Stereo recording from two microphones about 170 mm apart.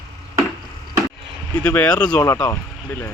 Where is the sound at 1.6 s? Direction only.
10° left (ahead or behind).